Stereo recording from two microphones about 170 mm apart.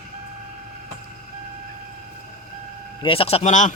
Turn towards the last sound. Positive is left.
turn(degrees=45)  # may be behind; listen again after turning